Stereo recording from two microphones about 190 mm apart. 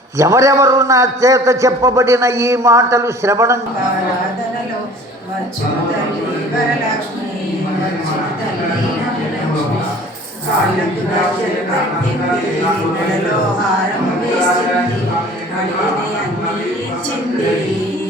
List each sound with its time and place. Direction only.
0.2 s a man's voice: 20° right (ahead or behind)